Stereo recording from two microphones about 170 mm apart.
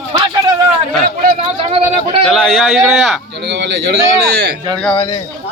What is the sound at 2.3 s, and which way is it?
Speech, centre (ahead or behind).